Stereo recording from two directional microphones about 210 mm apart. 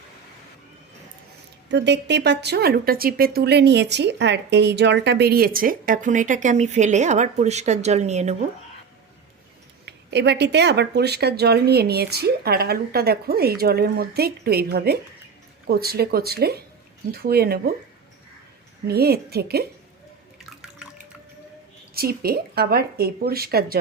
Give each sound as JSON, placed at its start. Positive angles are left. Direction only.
{"t": 1.7, "sound": "speech", "side_deg": -55}
{"t": 9.8, "sound": "speech", "side_deg": -55}
{"t": 18.9, "sound": "speech", "side_deg": -50}
{"t": 20.4, "sound": "water", "side_deg": 0}
{"t": 21.9, "sound": "speech", "side_deg": -45}